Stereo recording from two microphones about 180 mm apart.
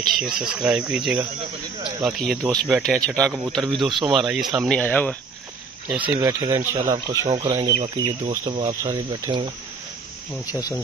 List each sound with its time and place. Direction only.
0.1 s speech: 5° right (ahead or behind)
5.9 s speech: 10° right (ahead or behind)
7.2 s speech: 30° right (ahead or behind)
10.4 s speech: 20° left (ahead or behind)